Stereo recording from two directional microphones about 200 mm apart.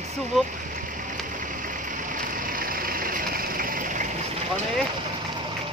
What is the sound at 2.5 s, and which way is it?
Vehicle, 45° right (ahead or behind).